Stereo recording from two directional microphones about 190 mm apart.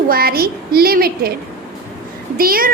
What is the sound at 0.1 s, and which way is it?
Child singing, 55° right (ahead or behind).